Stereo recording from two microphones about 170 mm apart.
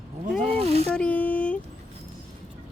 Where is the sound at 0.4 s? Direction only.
35° right (ahead or behind).